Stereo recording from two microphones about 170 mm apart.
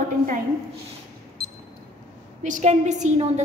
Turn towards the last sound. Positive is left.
turn(degrees=-40)  # may be behind; listen again after turning